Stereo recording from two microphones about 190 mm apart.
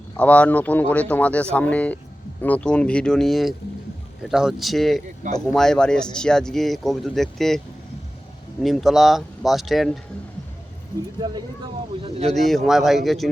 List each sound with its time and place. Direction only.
0.2 s speech: 5° left (ahead or behind)
8.6 s speech: centre (ahead or behind)
11.2 s speech: 20° right (ahead or behind)
12.0 s speech: 30° right (ahead or behind)
12.3 s speech: centre (ahead or behind)